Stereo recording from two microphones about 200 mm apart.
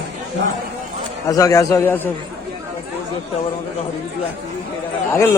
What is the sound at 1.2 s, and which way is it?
Speech, 15° left (ahead or behind).